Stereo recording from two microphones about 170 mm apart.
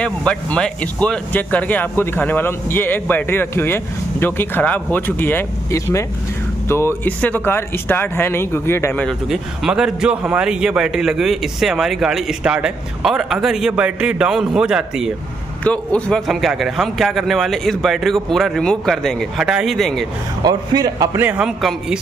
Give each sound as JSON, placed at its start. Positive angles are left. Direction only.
{"t": 0.0, "sound": "speech", "side_deg": 5}
{"t": 9.3, "sound": "a man's voice", "side_deg": -5}
{"t": 15.6, "sound": "a man's voice", "side_deg": 5}
{"t": 20.4, "sound": "a man's voice", "side_deg": -20}
{"t": 21.3, "sound": "a man's voice", "side_deg": -5}